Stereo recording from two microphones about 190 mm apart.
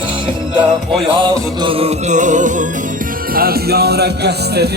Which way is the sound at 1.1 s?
25° right (ahead or behind).